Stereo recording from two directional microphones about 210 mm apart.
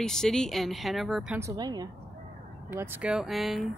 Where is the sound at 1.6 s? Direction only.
20° right (ahead or behind).